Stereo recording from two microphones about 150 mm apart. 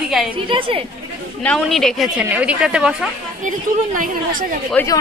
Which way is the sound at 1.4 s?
Centre (ahead or behind).